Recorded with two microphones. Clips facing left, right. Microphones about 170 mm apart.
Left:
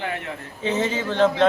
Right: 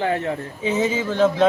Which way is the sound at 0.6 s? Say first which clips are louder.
Right 2 dB; 10° right (ahead or behind).